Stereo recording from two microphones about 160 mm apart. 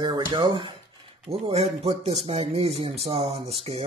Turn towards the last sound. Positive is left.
turn(degrees=-40)  # may be behind; listen again after turning